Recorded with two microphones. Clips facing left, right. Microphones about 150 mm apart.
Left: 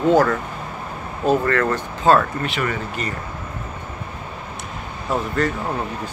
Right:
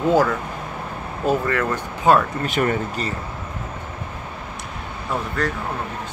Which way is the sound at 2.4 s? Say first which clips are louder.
Right 3 dB; 40° right (ahead or behind).